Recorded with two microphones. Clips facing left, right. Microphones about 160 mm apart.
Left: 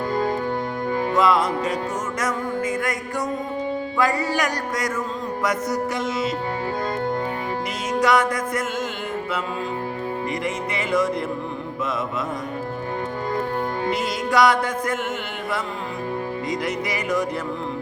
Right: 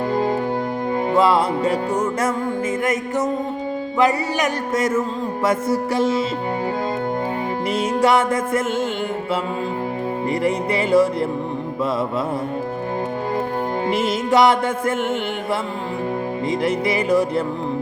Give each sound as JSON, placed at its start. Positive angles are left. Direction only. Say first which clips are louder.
{"t": 0.9, "sound": "music", "louder": "right 3 dB", "side_deg": -30}
{"t": 3.9, "sound": "music", "louder": "right 4 dB", "side_deg": -20}
{"t": 8.0, "sound": "music", "louder": "right 2 dB", "side_deg": -25}
{"t": 10.4, "sound": "music", "louder": "right 6 dB", "side_deg": -30}
{"t": 13.8, "sound": "music", "louder": "right 4 dB", "side_deg": -25}
{"t": 16.5, "sound": "music", "louder": "right 7 dB", "side_deg": -30}